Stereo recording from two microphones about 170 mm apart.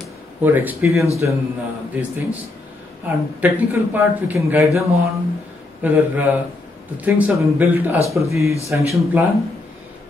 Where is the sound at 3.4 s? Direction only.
10° right (ahead or behind).